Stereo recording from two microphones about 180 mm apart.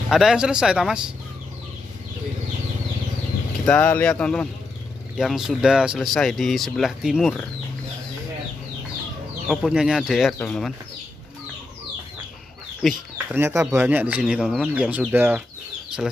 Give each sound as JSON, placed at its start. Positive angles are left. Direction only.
{"t": 0.1, "sound": "speech", "side_deg": -5}
{"t": 3.6, "sound": "speech", "side_deg": 5}
{"t": 9.5, "sound": "speech", "side_deg": 0}
{"t": 12.8, "sound": "speech", "side_deg": 0}
{"t": 13.3, "sound": "speech", "side_deg": -15}